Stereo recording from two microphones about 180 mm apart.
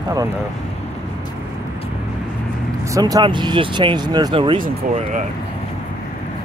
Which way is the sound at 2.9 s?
20° right (ahead or behind).